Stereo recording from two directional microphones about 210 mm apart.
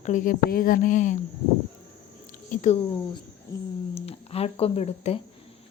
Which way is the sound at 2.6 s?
30° left (ahead or behind).